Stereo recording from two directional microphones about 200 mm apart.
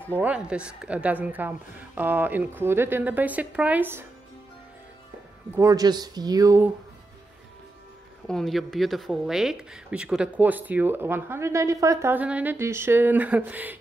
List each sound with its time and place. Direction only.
0.1 s speech: 5° right (ahead or behind)
5.5 s speech: 15° right (ahead or behind)
8.3 s speech: centre (ahead or behind)